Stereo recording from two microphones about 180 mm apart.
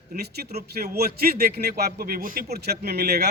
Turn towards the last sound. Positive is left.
turn(degrees=-60)  # may be behind; listen again after turning